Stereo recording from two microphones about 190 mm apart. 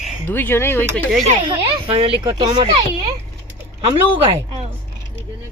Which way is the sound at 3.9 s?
30° right (ahead or behind).